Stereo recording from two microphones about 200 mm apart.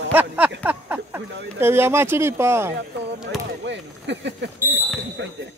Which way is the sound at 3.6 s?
60° right (ahead or behind).